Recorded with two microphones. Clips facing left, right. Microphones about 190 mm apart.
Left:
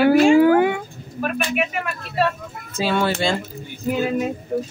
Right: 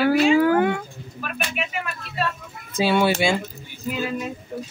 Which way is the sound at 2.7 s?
15° right (ahead or behind).